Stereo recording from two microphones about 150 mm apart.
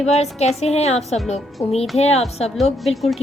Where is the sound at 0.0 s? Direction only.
45° left (ahead or behind).